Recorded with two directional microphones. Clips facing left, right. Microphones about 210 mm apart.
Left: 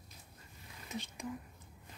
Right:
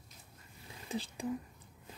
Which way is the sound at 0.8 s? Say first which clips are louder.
Right 4 dB; 30° right (ahead or behind).